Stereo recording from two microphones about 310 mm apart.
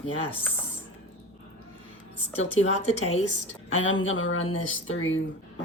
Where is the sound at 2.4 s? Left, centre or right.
Left.